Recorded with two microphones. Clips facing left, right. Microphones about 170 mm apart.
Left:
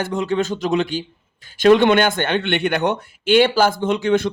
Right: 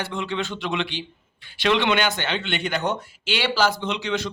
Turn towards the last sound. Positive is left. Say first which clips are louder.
# left 9 dB
turn(degrees=50)  # may be behind; listen again after turning